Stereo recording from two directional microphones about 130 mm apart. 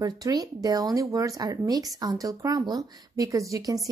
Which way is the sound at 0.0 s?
30° right (ahead or behind).